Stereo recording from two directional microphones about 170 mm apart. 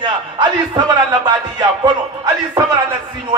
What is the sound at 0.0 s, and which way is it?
Speech, 25° right (ahead or behind).